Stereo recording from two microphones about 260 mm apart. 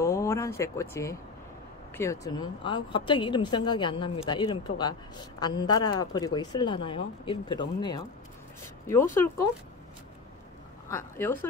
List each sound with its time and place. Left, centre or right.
0.0 s a sound: centre
2.0 s a woman's voice: centre
10.9 s a woman's voice: centre